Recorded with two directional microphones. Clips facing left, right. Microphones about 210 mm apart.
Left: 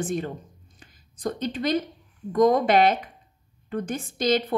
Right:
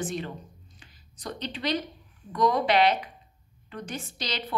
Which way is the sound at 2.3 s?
50° left (ahead or behind).